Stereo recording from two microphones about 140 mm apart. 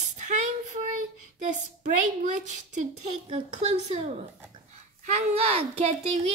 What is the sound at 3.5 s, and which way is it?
A child's voice, 50° right (ahead or behind).